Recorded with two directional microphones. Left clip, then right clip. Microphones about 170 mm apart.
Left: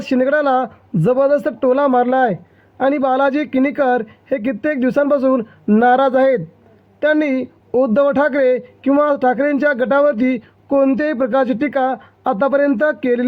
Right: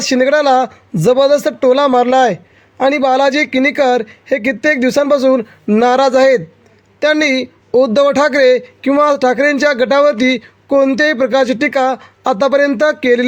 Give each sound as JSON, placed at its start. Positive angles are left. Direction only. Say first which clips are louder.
{"t": 0.1, "sound": "speech", "louder": "right 4 dB", "side_deg": -40}